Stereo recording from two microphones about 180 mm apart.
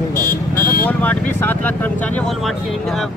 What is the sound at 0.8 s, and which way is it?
Speech, 10° left (ahead or behind).